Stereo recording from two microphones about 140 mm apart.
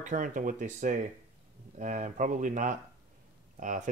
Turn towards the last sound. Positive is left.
turn(degrees=-65)  # may be behind; listen again after turning